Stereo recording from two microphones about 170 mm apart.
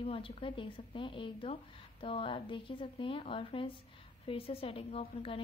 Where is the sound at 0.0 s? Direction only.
30° left (ahead or behind).